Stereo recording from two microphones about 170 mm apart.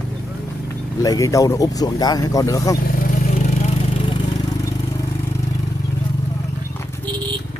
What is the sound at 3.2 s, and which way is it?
Vehicle, 40° left (ahead or behind).